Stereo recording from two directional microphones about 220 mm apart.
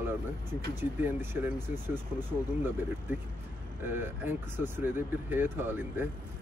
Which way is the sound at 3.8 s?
10° right (ahead or behind).